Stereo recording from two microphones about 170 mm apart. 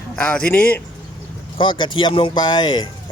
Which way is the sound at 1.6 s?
30° left (ahead or behind).